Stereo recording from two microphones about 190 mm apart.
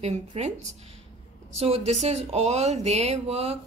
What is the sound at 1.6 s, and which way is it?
A woman's voice, 35° right (ahead or behind).